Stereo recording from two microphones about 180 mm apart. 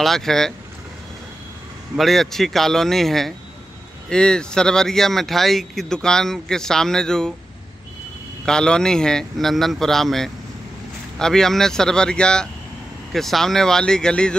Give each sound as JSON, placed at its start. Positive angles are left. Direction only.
{"t": 0.0, "sound": "speech", "side_deg": 0}
{"t": 2.0, "sound": "speech", "side_deg": 0}
{"t": 8.5, "sound": "speech", "side_deg": 5}